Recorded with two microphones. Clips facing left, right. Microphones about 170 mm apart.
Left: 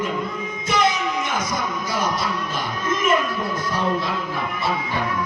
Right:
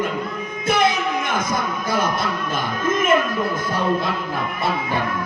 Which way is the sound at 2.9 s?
50° right (ahead or behind).